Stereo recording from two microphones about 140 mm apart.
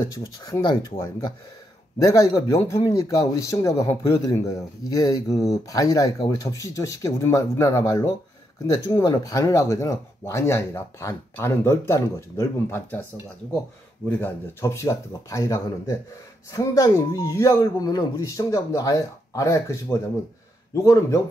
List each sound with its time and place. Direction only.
0.0 s speech: 25° left (ahead or behind)
14.0 s speech: 10° left (ahead or behind)